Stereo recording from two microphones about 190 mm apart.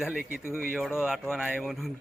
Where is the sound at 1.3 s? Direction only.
5° right (ahead or behind).